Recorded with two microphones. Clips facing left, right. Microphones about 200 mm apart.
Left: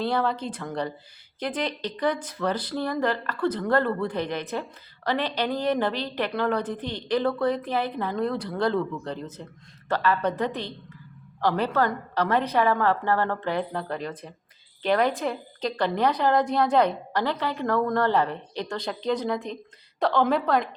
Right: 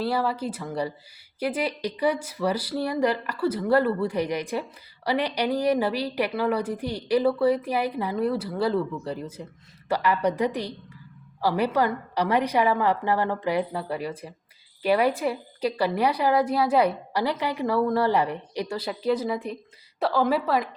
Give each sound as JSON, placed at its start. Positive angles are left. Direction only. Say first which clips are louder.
{"t": 0.0, "sound": "a woman's voice", "louder": "even", "side_deg": -5}